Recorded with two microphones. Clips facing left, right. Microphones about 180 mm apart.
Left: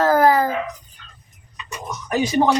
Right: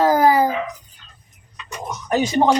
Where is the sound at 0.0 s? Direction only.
15° right (ahead or behind).